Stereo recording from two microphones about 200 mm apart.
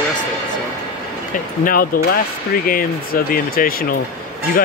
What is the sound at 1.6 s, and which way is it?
Speech, 45° left (ahead or behind).